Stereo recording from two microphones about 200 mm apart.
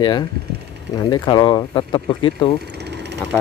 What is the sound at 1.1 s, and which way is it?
Speech, 20° left (ahead or behind).